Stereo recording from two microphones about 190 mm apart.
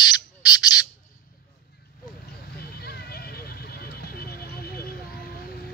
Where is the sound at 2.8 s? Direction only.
55° left (ahead or behind).